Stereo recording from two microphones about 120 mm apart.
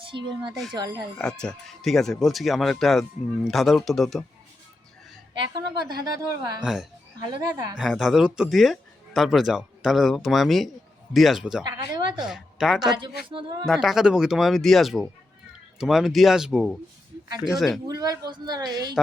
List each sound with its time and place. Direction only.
0.0 s a woman's voice: 45° right (ahead or behind)
1.2 s speech: 5° left (ahead or behind)
5.3 s a woman's voice: 40° right (ahead or behind)
6.6 s speech: 5° right (ahead or behind)
7.3 s a woman's voice: 35° right (ahead or behind)
7.8 s speech: centre (ahead or behind)
11.6 s speech: 35° right (ahead or behind)
12.2 s speech: 5° right (ahead or behind)
13.0 s a woman's voice: 40° right (ahead or behind)
13.7 s speech: centre (ahead or behind)
17.8 s a woman's voice: 30° right (ahead or behind)